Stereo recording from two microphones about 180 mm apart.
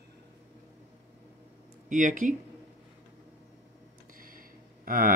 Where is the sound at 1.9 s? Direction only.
45° right (ahead or behind).